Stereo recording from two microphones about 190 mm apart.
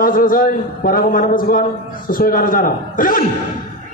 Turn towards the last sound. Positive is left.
turn(degrees=45)  # may be behind; listen again after turning